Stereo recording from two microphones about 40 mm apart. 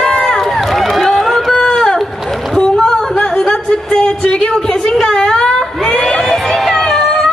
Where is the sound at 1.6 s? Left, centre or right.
Centre.